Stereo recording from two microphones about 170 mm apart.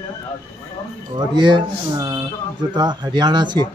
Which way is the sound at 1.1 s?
25° right (ahead or behind).